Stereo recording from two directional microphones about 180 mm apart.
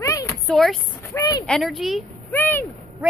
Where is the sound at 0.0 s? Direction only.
15° left (ahead or behind).